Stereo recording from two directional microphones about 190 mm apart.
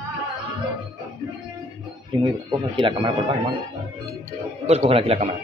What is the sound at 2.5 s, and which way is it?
Speech, 25° right (ahead or behind).